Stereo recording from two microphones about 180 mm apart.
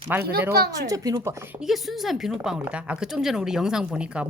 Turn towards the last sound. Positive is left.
turn(degrees=-5)  # may be behind; listen again after turning